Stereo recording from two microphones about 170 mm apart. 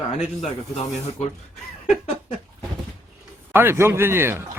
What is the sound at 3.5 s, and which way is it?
Speech, 15° right (ahead or behind).